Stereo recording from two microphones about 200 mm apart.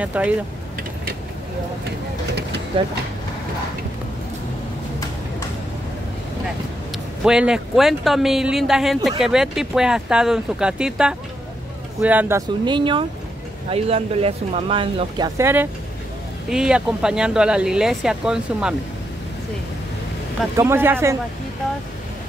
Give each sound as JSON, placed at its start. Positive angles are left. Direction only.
{"t": 0.0, "sound": "speech", "side_deg": -5}
{"t": 7.2, "sound": "speech", "side_deg": -5}
{"t": 20.5, "sound": "speech", "side_deg": -15}